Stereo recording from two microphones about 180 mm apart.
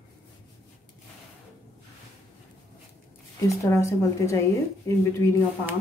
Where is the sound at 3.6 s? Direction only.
15° left (ahead or behind).